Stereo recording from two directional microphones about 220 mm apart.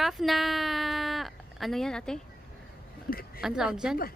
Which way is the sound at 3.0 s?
40° left (ahead or behind).